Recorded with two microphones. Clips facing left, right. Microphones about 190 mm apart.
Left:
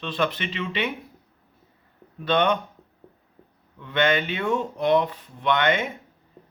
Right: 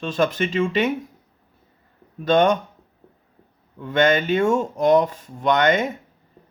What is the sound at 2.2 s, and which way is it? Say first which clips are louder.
Speech: right 5 dB; 45° right (ahead or behind).